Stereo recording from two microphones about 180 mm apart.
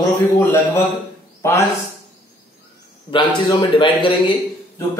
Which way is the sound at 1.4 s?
15° left (ahead or behind).